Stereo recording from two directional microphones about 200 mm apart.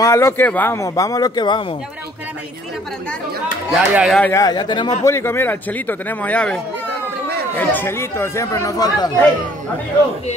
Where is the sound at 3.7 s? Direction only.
5° right (ahead or behind).